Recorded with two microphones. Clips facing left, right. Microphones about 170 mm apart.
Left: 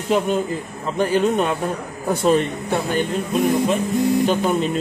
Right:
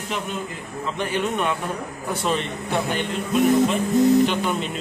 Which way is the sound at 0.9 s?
40° left (ahead or behind).